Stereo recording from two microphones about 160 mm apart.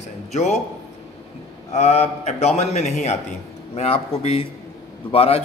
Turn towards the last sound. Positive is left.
turn(degrees=35)  # may be behind; listen again after turning